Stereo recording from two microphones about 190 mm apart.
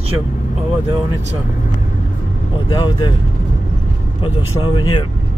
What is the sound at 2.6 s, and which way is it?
Speech, 25° left (ahead or behind).